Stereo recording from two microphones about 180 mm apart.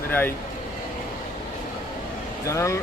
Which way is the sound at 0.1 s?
10° left (ahead or behind).